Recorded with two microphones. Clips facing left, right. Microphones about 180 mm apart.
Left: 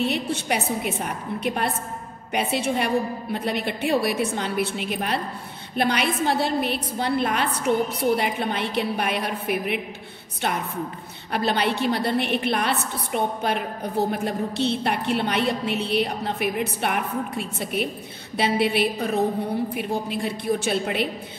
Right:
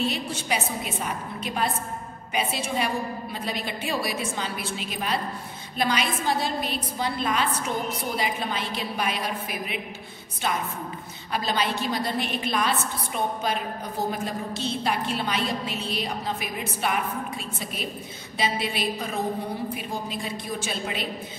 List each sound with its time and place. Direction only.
0.0 s a woman's voice: 60° left (ahead or behind)